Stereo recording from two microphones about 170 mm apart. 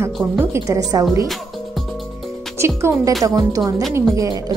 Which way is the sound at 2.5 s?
15° right (ahead or behind).